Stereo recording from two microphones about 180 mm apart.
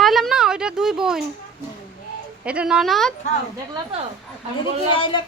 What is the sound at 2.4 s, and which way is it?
Speech, 5° right (ahead or behind).